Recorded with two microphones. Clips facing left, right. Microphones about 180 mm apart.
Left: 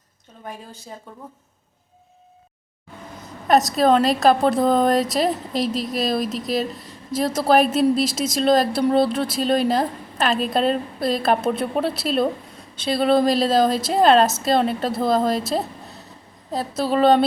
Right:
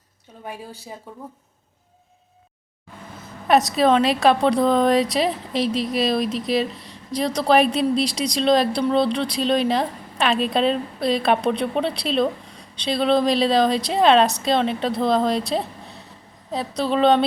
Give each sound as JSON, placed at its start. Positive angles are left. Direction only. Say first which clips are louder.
{"t": 3.5, "sound": "speech", "louder": "even", "side_deg": 0}